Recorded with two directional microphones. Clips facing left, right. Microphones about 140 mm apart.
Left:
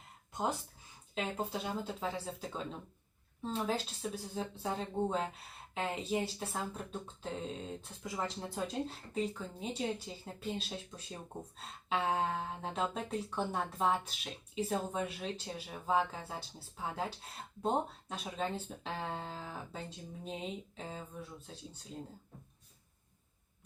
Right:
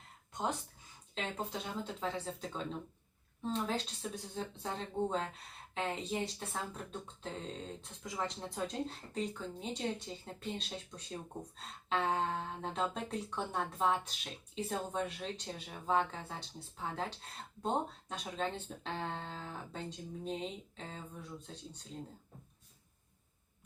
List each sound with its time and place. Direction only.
1.8 s speech: 5° left (ahead or behind)